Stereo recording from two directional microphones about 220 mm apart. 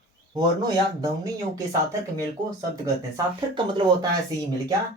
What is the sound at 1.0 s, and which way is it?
Speech, 15° right (ahead or behind).